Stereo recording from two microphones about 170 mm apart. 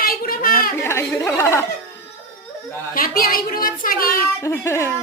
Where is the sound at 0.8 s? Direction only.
15° left (ahead or behind).